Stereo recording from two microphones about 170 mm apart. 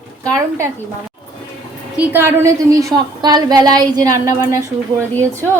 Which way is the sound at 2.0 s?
15° right (ahead or behind).